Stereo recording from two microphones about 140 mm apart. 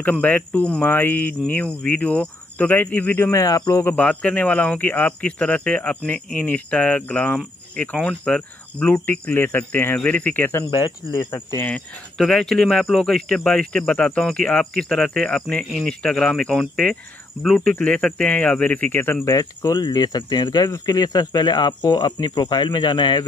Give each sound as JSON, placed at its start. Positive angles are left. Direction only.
{"t": 0.0, "sound": "speech", "side_deg": 10}
{"t": 10.7, "sound": "speech", "side_deg": 30}
{"t": 11.3, "sound": "speech", "side_deg": 20}
{"t": 11.7, "sound": "speech", "side_deg": 5}